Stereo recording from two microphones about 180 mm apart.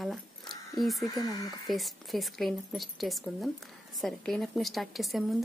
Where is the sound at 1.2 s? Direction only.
20° left (ahead or behind).